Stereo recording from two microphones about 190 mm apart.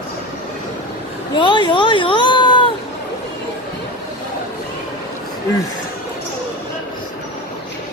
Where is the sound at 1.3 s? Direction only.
25° left (ahead or behind).